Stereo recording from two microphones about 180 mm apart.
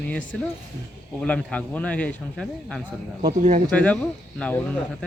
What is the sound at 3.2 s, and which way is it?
Speech, 40° right (ahead or behind).